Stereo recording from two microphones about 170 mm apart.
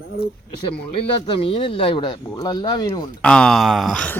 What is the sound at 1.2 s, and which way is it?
Speech, 35° left (ahead or behind).